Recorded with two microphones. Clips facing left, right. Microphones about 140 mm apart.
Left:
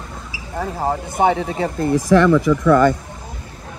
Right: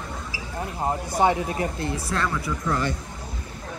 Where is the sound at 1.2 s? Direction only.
20° left (ahead or behind).